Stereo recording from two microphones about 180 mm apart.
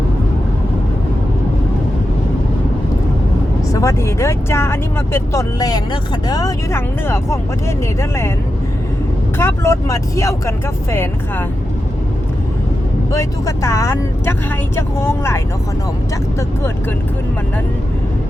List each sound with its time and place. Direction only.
3.7 s speech: 15° left (ahead or behind)
9.4 s speech: 15° left (ahead or behind)
13.1 s speech: 15° left (ahead or behind)